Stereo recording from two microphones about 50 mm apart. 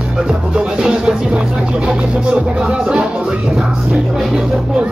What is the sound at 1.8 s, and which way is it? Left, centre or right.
Music, centre.